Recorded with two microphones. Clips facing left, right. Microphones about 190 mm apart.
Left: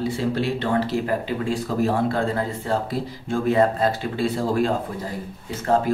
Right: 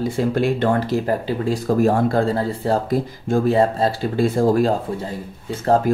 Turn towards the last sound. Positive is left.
turn(degrees=-45)  # may be behind; listen again after turning